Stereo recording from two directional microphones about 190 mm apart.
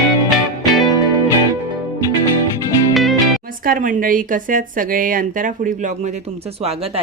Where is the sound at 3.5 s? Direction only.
45° right (ahead or behind).